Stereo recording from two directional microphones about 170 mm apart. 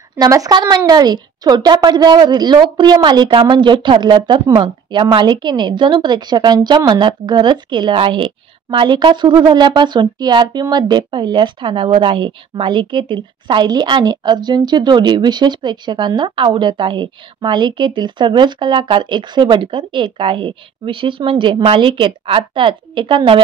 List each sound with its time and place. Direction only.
0.2 s a woman's voice: 20° right (ahead or behind)